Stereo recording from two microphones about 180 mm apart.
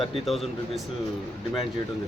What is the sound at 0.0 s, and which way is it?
Speech, centre (ahead or behind).